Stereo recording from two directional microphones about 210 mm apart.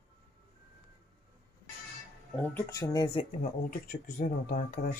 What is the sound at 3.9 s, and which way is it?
Speech, 40° left (ahead or behind).